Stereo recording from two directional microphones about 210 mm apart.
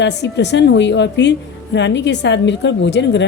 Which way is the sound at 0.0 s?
55° left (ahead or behind).